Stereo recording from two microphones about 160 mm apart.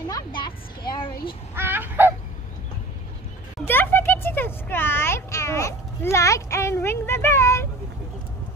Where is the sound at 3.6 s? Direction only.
15° left (ahead or behind).